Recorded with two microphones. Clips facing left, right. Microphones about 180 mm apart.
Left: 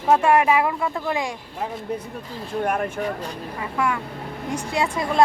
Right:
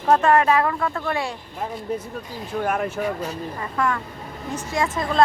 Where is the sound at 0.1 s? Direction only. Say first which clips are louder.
Even; 10° left (ahead or behind).